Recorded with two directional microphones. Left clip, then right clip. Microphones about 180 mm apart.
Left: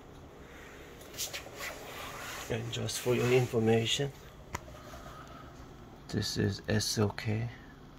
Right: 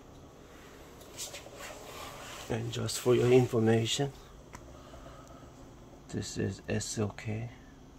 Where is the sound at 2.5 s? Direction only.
40° right (ahead or behind).